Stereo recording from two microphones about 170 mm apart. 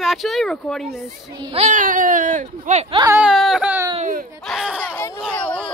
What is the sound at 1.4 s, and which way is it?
Speech, 30° right (ahead or behind).